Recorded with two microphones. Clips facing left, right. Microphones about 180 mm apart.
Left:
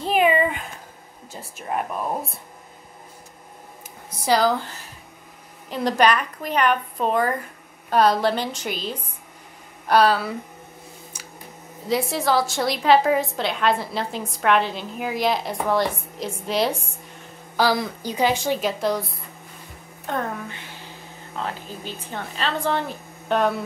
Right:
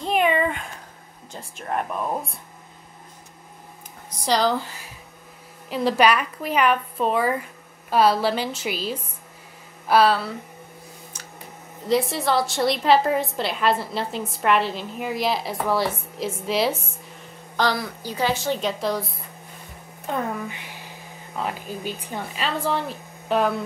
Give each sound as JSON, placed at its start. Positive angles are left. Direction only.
{"t": 0.0, "sound": "a sound", "side_deg": 5}
{"t": 1.3, "sound": "speech", "side_deg": 5}
{"t": 4.2, "sound": "a woman's voice", "side_deg": 5}
{"t": 5.7, "sound": "a woman's voice", "side_deg": -5}
{"t": 11.1, "sound": "a sound", "side_deg": 10}
{"t": 11.9, "sound": "a woman's voice", "side_deg": 0}
{"t": 17.7, "sound": "a woman's voice", "side_deg": 15}
{"t": 20.1, "sound": "a woman's voice", "side_deg": -10}